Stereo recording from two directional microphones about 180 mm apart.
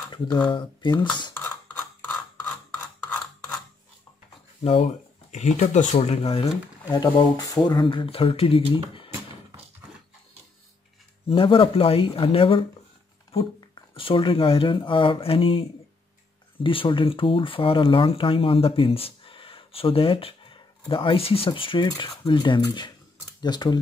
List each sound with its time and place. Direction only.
0.1 s speech: 25° left (ahead or behind)
1.4 s a sound: 10° left (ahead or behind)
5.3 s speech: 40° left (ahead or behind)
6.4 s speech: 20° left (ahead or behind)
11.2 s speech: 30° left (ahead or behind)
16.6 s speech: 30° left (ahead or behind)